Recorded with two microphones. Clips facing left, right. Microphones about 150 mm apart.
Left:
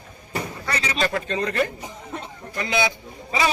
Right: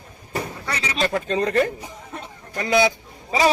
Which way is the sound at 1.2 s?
40° right (ahead or behind).